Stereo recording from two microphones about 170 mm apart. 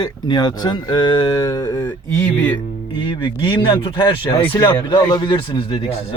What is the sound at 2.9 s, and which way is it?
Speech, 25° left (ahead or behind).